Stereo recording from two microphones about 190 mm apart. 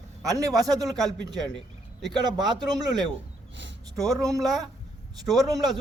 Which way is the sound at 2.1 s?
20° right (ahead or behind).